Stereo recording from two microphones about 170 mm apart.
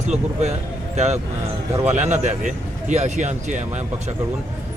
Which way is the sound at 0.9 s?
40° right (ahead or behind).